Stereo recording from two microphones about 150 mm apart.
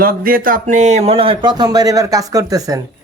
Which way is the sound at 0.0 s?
75° right (ahead or behind).